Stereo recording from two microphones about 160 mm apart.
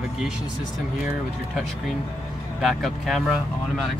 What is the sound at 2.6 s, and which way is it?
Speech, centre (ahead or behind).